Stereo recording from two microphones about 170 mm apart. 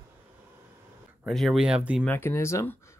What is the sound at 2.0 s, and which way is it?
Speech, 15° left (ahead or behind).